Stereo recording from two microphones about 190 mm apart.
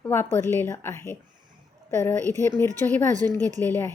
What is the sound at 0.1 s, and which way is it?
Speech, 10° left (ahead or behind).